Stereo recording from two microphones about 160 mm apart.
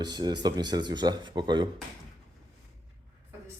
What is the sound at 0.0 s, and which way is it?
Speech, 25° right (ahead or behind).